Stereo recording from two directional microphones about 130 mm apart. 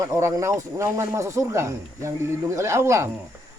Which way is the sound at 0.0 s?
20° right (ahead or behind).